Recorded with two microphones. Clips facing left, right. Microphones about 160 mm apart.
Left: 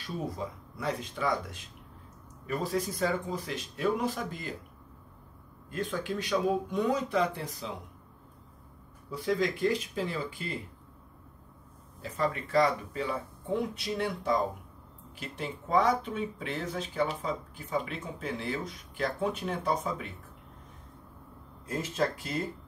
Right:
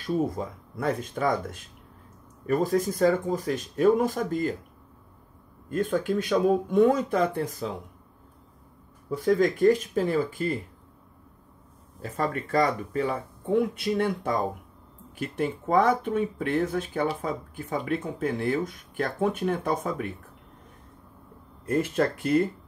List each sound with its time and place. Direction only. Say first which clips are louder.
0.0 s speech: right 8 dB; 50° right (ahead or behind)
5.7 s speech: right 8 dB; 50° right (ahead or behind)
9.1 s speech: right 7 dB; 50° right (ahead or behind)
12.0 s speech: right 2 dB; 50° right (ahead or behind)
21.6 s speech: right 6 dB; 60° right (ahead or behind)